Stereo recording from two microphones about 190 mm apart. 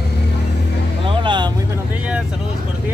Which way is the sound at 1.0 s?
25° right (ahead or behind).